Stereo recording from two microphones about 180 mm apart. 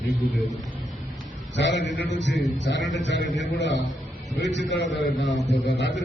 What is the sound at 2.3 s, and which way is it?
Speech, centre (ahead or behind).